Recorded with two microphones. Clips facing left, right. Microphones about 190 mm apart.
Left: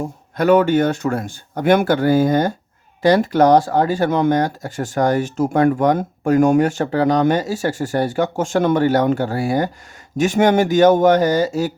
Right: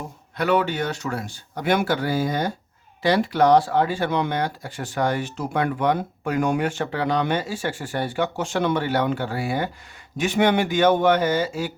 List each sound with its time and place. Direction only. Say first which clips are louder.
0.3 s a man's voice: left 8 dB; 45° left (ahead or behind)